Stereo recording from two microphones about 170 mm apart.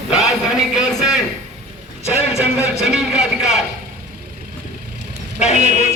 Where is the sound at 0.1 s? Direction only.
5° right (ahead or behind).